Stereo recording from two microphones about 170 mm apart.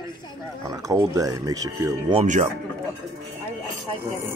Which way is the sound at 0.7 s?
20° right (ahead or behind).